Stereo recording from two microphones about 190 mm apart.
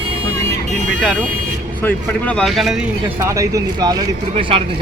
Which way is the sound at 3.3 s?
15° right (ahead or behind).